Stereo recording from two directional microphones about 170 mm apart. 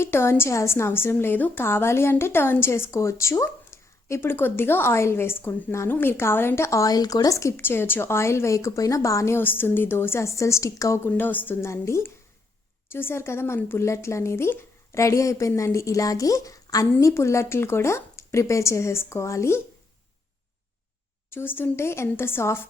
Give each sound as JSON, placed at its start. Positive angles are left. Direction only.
{"t": 0.0, "sound": "a woman's voice", "side_deg": 15}
{"t": 21.2, "sound": "a woman's voice", "side_deg": 15}